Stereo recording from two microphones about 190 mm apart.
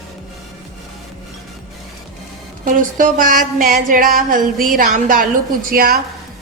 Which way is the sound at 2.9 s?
45° right (ahead or behind).